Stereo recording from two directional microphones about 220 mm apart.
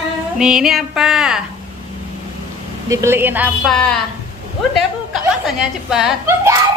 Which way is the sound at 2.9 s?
10° right (ahead or behind).